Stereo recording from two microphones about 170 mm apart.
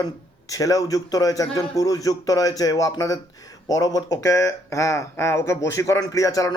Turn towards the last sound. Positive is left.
turn(degrees=20)  # may be behind; listen again after turning